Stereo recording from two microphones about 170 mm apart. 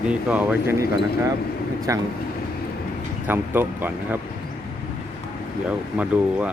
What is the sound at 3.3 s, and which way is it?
Speech, 10° right (ahead or behind).